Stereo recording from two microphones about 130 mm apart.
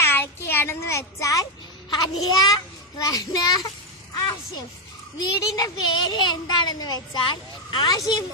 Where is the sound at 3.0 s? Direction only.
25° left (ahead or behind).